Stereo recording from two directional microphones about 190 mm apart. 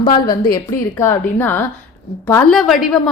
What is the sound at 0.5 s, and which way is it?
A woman's voice, 15° left (ahead or behind).